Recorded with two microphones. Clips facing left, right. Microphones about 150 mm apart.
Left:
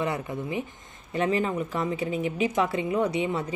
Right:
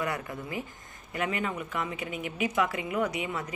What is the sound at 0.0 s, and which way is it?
A woman's voice, 25° left (ahead or behind).